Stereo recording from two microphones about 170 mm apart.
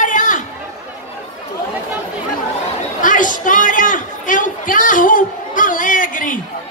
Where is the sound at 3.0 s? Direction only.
50° left (ahead or behind).